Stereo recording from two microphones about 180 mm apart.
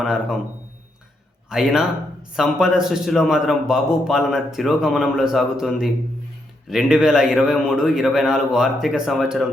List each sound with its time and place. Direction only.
0.0 s a man's voice: 5° right (ahead or behind)
1.5 s a man's voice: centre (ahead or behind)